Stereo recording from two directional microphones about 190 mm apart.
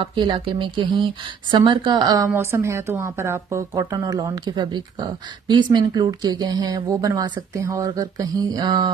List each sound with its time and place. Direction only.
0.0 s a woman's voice: 25° right (ahead or behind)